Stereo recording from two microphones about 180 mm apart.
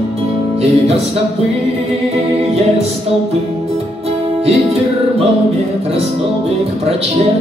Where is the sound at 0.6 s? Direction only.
35° right (ahead or behind).